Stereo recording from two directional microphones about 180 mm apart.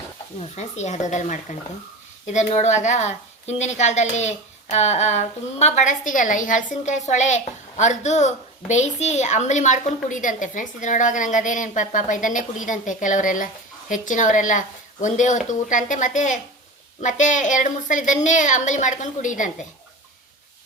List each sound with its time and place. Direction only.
0.3 s a woman's voice: 40° left (ahead or behind)